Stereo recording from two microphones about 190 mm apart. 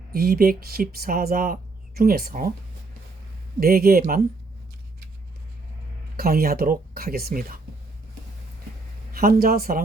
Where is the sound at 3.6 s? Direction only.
50° right (ahead or behind).